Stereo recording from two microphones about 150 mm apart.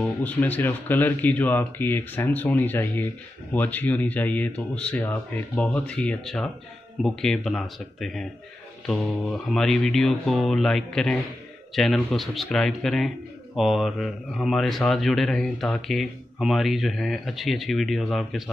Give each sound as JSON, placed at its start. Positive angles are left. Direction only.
{"t": 0.0, "sound": "speech", "side_deg": 10}